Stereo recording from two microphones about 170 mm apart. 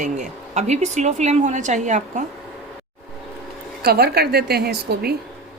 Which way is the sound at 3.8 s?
70° right (ahead or behind).